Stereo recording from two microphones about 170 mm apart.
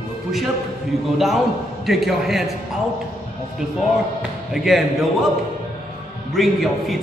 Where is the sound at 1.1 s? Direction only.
Centre (ahead or behind).